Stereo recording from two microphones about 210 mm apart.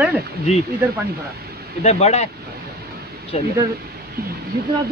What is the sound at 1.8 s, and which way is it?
Speech, 30° left (ahead or behind).